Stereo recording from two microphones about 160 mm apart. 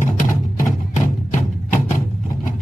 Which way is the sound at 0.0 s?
55° left (ahead or behind).